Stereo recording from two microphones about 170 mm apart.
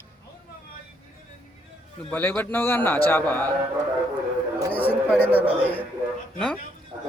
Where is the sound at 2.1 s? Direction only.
10° left (ahead or behind).